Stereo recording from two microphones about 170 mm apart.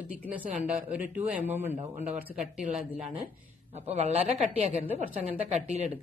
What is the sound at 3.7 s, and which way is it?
Speech, 40° right (ahead or behind).